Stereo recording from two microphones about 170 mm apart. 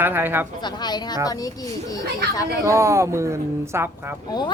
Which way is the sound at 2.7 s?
15° right (ahead or behind).